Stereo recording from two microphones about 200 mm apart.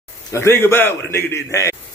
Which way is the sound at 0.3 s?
15° left (ahead or behind).